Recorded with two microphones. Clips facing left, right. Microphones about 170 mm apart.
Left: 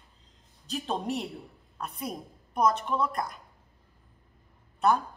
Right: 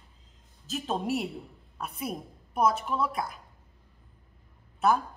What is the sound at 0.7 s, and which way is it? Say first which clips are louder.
A woman's voice: right 1 dB; centre (ahead or behind).